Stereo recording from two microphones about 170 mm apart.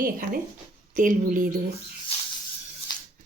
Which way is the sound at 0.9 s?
50° right (ahead or behind).